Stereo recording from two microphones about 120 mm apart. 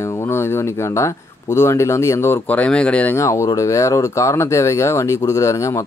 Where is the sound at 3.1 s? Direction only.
25° left (ahead or behind).